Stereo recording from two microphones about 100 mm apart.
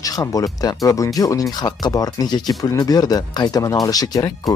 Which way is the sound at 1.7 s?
45° left (ahead or behind).